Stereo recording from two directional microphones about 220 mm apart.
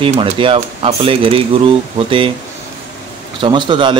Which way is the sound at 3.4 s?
20° right (ahead or behind).